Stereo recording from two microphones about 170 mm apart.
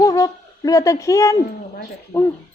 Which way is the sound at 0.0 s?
20° left (ahead or behind).